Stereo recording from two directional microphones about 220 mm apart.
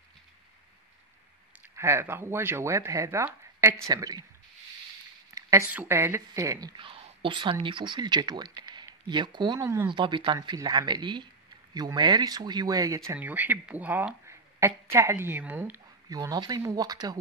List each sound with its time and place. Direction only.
1.8 s speech: 10° right (ahead or behind)
5.3 s speech: 10° right (ahead or behind)